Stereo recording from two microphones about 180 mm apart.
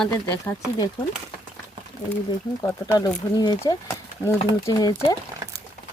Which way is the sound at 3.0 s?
20° left (ahead or behind).